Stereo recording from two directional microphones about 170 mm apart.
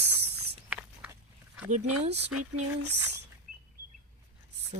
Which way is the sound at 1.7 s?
40° right (ahead or behind).